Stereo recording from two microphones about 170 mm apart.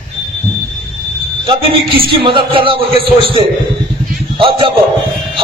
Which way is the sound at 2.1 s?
30° right (ahead or behind).